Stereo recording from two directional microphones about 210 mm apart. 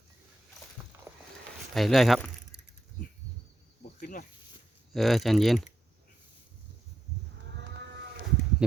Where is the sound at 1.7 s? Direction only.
Centre (ahead or behind).